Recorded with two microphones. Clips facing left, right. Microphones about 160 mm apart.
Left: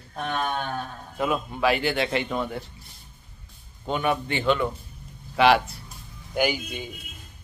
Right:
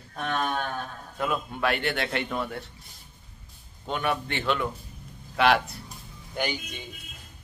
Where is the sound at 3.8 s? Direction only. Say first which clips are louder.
Left 3 dB; centre (ahead or behind).